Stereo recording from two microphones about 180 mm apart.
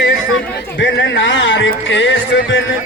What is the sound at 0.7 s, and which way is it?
A man's voice, 90° left.